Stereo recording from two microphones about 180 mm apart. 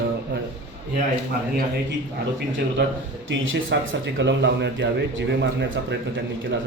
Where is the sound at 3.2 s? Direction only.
90° right.